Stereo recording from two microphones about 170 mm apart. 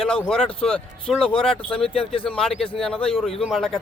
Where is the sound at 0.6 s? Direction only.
5° left (ahead or behind).